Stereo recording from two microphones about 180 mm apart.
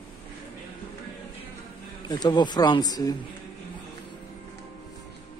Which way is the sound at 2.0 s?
25° left (ahead or behind).